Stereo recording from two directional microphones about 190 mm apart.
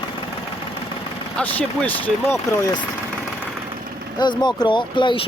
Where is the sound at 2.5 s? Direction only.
15° left (ahead or behind).